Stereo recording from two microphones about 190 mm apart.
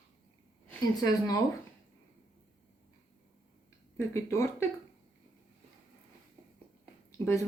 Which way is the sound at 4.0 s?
15° left (ahead or behind).